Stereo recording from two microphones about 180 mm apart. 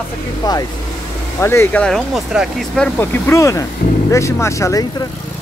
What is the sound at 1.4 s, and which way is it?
Speech, 15° left (ahead or behind).